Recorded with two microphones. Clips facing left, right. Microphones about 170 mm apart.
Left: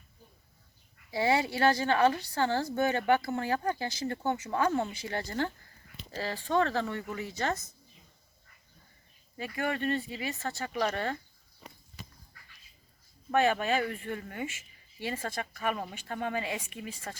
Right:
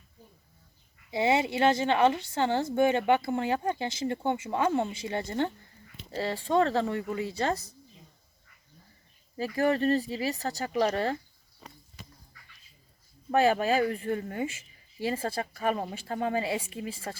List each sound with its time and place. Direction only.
1.1 s a woman's voice: 20° right (ahead or behind)
9.4 s speech: 35° right (ahead or behind)
13.3 s speech: 35° right (ahead or behind)